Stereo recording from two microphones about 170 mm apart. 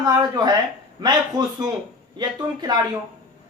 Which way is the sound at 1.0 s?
25° right (ahead or behind).